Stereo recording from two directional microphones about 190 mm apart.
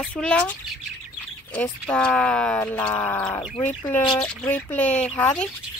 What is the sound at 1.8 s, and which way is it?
Speech, 5° left (ahead or behind).